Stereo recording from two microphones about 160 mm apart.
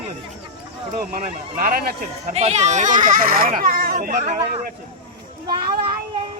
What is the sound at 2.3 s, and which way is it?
Speech, 45° right (ahead or behind).